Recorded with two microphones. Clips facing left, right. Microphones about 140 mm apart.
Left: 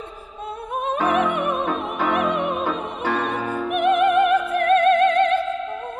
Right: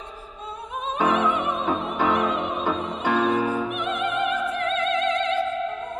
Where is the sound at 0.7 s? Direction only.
55° left (ahead or behind).